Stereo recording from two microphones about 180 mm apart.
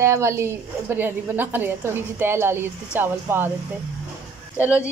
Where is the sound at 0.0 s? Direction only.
15° right (ahead or behind).